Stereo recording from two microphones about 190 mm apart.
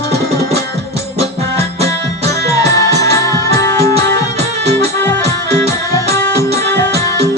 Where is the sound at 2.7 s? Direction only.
15° left (ahead or behind).